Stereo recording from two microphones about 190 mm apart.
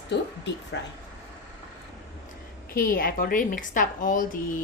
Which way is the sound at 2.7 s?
50° left (ahead or behind).